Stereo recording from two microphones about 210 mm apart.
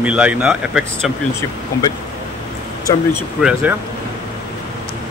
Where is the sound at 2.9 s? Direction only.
10° left (ahead or behind).